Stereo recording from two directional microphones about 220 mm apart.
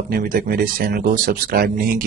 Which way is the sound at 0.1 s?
40° right (ahead or behind).